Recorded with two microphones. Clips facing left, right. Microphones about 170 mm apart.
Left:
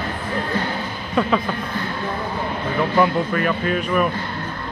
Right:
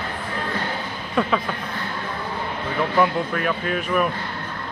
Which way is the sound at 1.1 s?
Centre (ahead or behind).